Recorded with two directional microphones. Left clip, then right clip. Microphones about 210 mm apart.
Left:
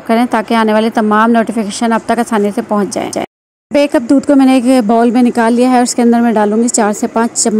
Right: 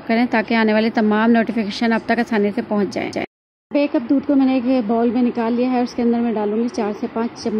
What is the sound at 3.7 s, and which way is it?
Speech, 30° left (ahead or behind).